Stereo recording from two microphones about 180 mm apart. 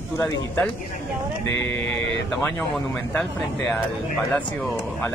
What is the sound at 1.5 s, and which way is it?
Speech, 90° left.